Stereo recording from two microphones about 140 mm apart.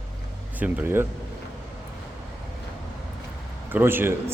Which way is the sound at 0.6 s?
15° right (ahead or behind).